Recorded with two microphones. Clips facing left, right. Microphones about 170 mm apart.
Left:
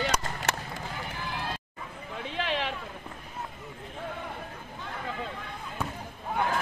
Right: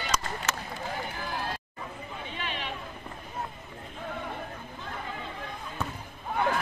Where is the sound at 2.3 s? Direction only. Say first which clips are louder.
Left 7 dB; 90° left.